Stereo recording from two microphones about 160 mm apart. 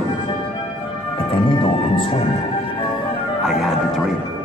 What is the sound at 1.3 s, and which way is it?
Music, 35° left (ahead or behind).